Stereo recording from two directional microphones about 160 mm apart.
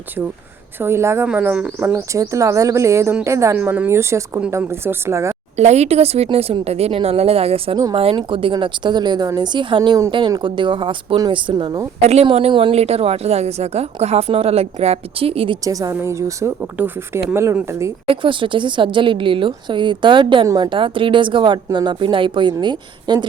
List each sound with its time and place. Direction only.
0.8 s speech: 15° right (ahead or behind)
5.5 s a woman's voice: 45° right (ahead or behind); by 11.9 s 25° right (ahead or behind)
12.0 s a woman's voice: 40° right (ahead or behind)
15.6 s speech: 20° right (ahead or behind)
18.0 s a woman's voice: 35° right (ahead or behind)